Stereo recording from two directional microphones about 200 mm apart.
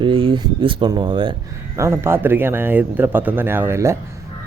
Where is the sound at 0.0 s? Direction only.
25° right (ahead or behind).